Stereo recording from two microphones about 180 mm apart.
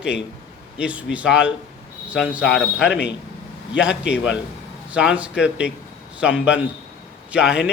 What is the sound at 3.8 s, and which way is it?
A man's voice, 5° right (ahead or behind).